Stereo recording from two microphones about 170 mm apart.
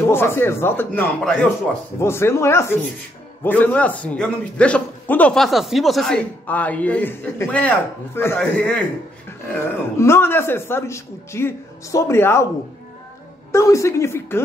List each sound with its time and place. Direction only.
0.1 s a man's voice: 15° left (ahead or behind)
13.5 s a man's voice: 15° left (ahead or behind)